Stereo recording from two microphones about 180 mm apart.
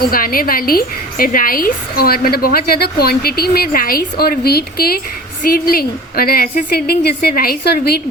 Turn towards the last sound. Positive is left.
turn(degrees=60)  # may be behind; listen again after turning